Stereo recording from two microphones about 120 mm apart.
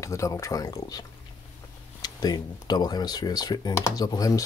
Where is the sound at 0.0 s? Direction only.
25° left (ahead or behind).